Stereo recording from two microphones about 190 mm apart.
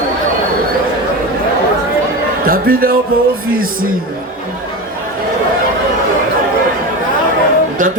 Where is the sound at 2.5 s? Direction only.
50° right (ahead or behind).